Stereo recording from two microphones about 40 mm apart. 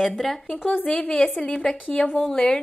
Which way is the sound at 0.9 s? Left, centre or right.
Centre.